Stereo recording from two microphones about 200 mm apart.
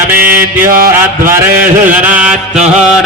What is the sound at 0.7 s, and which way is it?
Mantra, 45° right (ahead or behind).